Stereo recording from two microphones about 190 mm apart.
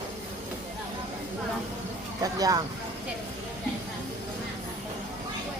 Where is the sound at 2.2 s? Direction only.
20° right (ahead or behind).